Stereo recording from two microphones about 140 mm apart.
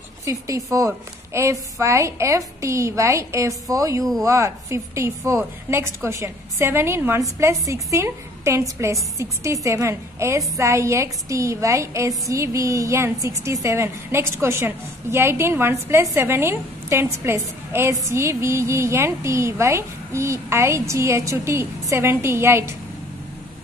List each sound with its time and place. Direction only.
0.2 s a woman's voice: 20° right (ahead or behind)